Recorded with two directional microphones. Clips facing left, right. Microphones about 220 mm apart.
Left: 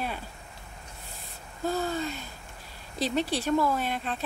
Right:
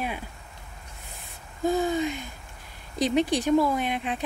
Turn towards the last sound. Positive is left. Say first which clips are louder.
# right 3 dB
turn(degrees=-15)  # may be behind; listen again after turning